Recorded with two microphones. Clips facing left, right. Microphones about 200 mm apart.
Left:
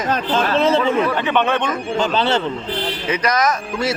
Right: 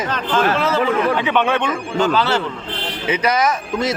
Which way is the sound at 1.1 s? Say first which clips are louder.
Even; 10° right (ahead or behind).